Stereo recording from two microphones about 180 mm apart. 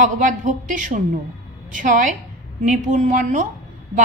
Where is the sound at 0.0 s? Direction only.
45° right (ahead or behind).